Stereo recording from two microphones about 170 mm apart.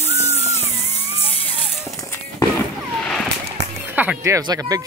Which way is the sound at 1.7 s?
Centre (ahead or behind).